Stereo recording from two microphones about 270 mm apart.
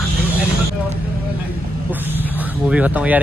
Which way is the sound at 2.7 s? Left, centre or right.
Centre.